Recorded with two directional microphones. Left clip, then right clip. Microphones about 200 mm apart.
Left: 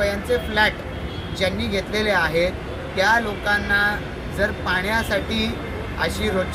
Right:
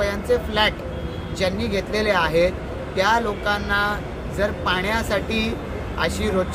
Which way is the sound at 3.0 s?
25° right (ahead or behind).